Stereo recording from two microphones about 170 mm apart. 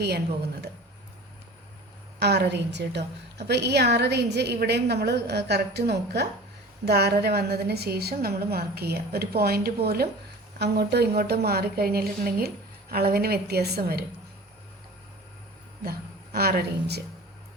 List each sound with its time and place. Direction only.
2.1 s a woman's voice: 75° right (ahead or behind)
10.6 s a woman's voice: 75° right (ahead or behind)
15.8 s a woman's voice: 65° right (ahead or behind)